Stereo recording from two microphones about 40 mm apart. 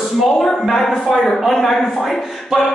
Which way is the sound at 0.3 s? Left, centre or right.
Left.